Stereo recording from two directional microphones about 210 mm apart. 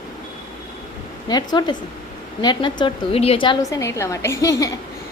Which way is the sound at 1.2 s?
20° left (ahead or behind).